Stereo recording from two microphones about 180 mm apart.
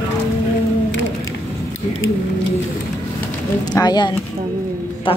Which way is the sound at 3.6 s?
20° left (ahead or behind).